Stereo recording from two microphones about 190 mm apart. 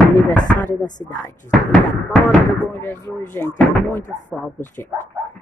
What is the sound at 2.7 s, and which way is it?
Speech, 10° left (ahead or behind).